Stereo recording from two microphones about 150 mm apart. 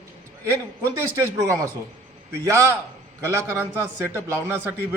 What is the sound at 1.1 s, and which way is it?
A man's voice, 20° right (ahead or behind).